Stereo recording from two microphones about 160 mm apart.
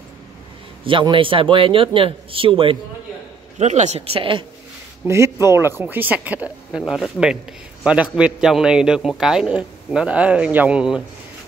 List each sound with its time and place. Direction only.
0.8 s a man's voice: 30° right (ahead or behind)
3.5 s a man's voice: 45° right (ahead or behind)
5.0 s a man's voice: 15° right (ahead or behind)